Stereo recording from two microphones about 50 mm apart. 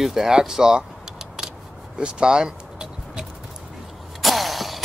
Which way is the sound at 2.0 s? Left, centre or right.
Centre.